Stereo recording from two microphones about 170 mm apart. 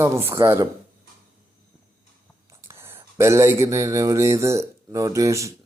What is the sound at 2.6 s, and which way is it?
Speech, 15° right (ahead or behind).